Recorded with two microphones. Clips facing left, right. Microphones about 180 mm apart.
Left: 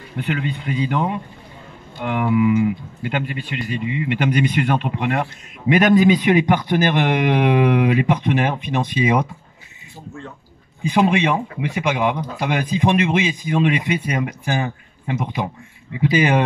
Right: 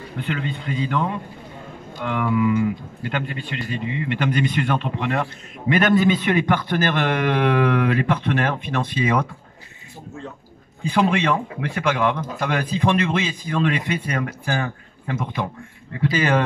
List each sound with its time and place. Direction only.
0.3 s speech: 15° left (ahead or behind)
10.8 s speech: 15° left (ahead or behind)